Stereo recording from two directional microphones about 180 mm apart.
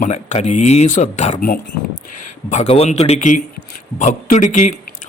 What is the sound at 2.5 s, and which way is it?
A man's voice, 35° left (ahead or behind).